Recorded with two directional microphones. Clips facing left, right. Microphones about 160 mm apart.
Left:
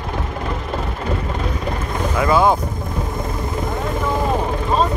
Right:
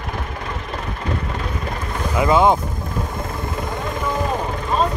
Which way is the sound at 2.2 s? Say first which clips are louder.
Right 1 dB; 20° right (ahead or behind).